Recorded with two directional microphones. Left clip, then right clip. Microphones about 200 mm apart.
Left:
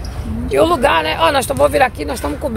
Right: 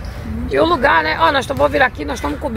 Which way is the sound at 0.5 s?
Centre (ahead or behind).